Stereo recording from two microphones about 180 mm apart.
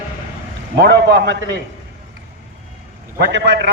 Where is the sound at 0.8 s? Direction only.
70° right (ahead or behind).